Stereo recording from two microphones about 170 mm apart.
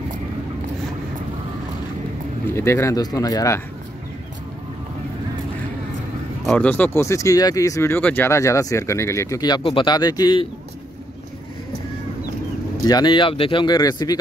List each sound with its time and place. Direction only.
2.5 s speech: 15° left (ahead or behind)
6.4 s speech: 5° left (ahead or behind); by 10.4 s 25° left (ahead or behind)
12.8 s speech: 25° left (ahead or behind)